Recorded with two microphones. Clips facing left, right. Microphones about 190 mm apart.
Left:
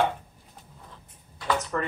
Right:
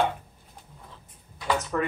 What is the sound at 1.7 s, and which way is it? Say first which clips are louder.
Speech: right 2 dB; 5° right (ahead or behind).